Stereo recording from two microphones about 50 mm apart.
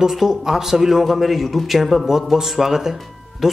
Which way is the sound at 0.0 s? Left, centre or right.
Centre.